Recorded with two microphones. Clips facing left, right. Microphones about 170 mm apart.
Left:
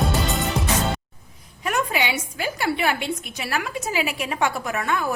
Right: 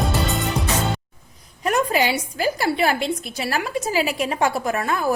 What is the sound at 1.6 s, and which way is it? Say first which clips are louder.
A woman's voice: right 4 dB; 40° right (ahead or behind).